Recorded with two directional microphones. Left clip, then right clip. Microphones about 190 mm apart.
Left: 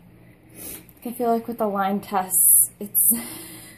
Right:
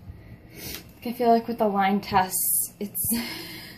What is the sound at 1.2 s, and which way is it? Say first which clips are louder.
Speech: right 2 dB; 15° left (ahead or behind).